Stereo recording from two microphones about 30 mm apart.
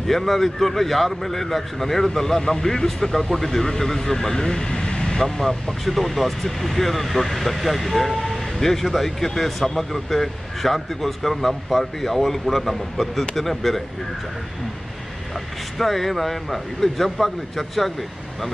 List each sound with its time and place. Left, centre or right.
0.0 s speech: centre; by 5.2 s left
5.2 s speech: centre
15.8 s speech: centre